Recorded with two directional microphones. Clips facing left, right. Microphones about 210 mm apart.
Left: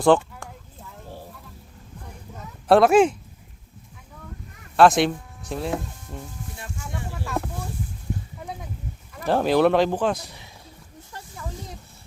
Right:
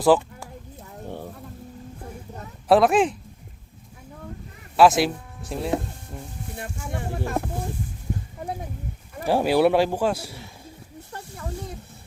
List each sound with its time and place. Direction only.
0.0 s speech: 5° right (ahead or behind)
2.6 s speech: centre (ahead or behind)
4.8 s speech: 5° right (ahead or behind)
6.6 s speech: 55° right (ahead or behind)
9.2 s speech: 10° right (ahead or behind)